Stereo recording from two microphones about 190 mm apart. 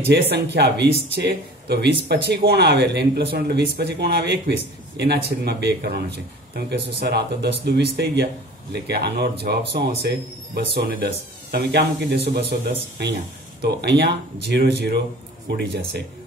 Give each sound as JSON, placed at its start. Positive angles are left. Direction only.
{"t": 0.3, "sound": "speech", "side_deg": -60}